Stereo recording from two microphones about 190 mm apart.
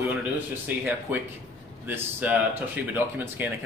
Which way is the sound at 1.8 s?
10° right (ahead or behind).